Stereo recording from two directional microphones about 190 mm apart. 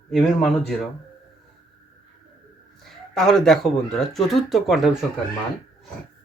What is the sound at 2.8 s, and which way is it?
Speech, centre (ahead or behind).